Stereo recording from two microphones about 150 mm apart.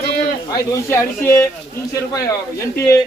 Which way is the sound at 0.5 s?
20° left (ahead or behind).